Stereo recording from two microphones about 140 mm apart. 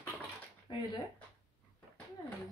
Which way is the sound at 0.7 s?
35° left (ahead or behind).